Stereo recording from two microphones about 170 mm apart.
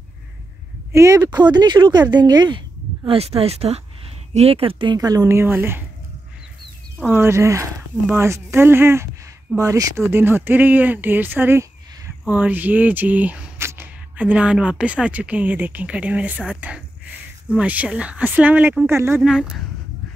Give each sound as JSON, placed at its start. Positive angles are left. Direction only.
{"t": 0.9, "sound": "speech", "side_deg": -15}
{"t": 7.1, "sound": "speech", "side_deg": -15}
{"t": 19.2, "sound": "speech", "side_deg": -5}